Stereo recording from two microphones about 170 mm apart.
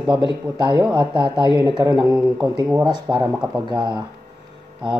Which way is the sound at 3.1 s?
20° right (ahead or behind).